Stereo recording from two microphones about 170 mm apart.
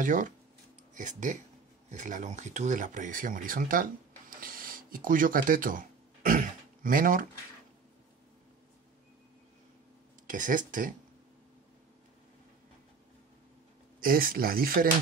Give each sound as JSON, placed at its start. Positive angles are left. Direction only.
{"t": 0.0, "sound": "speech", "side_deg": -50}
{"t": 4.4, "sound": "a sound", "side_deg": -55}
{"t": 10.2, "sound": "speech", "side_deg": -50}
{"t": 13.9, "sound": "speech", "side_deg": -55}